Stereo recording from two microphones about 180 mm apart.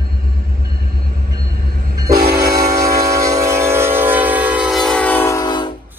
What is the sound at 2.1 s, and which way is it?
Train, 60° right (ahead or behind).